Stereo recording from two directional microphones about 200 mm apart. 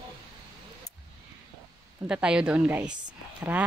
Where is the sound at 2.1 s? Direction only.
5° right (ahead or behind).